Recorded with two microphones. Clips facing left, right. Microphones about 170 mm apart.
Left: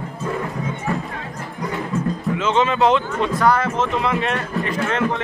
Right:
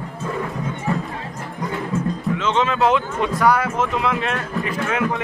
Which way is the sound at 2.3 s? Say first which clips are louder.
Left 2 dB; centre (ahead or behind).